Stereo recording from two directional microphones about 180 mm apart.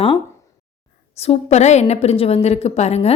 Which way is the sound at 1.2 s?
35° left (ahead or behind).